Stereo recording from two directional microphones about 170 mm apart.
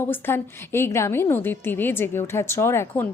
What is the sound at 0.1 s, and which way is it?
A woman's voice, 15° left (ahead or behind).